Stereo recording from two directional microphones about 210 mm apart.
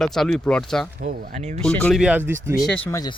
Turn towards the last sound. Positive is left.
turn(degrees=15)  # may be behind; listen again after turning